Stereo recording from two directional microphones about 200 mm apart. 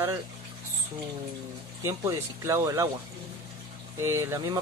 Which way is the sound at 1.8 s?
15° right (ahead or behind).